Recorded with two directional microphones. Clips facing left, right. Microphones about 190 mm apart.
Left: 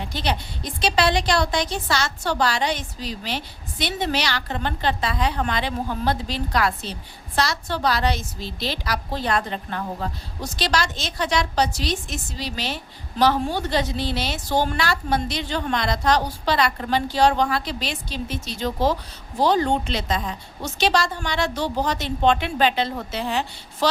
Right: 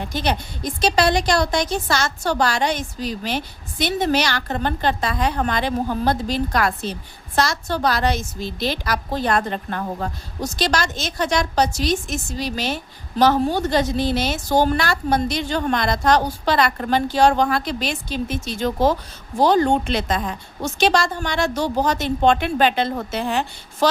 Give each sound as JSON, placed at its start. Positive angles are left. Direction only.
{"t": 0.0, "sound": "a woman's voice", "side_deg": -45}